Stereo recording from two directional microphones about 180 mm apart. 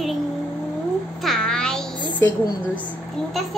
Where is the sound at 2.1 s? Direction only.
20° left (ahead or behind).